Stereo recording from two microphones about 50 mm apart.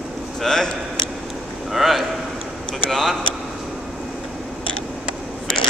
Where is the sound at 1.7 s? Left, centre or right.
Centre.